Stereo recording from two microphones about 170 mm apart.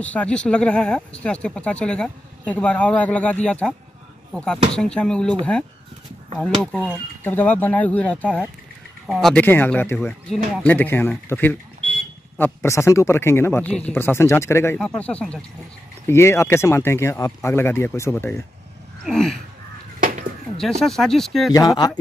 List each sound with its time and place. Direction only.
0.0 s speech: 10° left (ahead or behind)
19.0 s speech: centre (ahead or behind)
20.0 s a sound: 50° right (ahead or behind)
20.8 s speech: centre (ahead or behind)
21.5 s speech: 20° left (ahead or behind)